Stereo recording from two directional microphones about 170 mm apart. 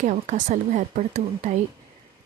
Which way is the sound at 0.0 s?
45° right (ahead or behind).